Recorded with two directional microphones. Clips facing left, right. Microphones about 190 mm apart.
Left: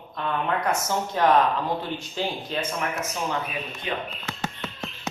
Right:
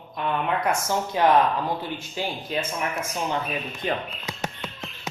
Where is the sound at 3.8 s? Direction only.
45° right (ahead or behind).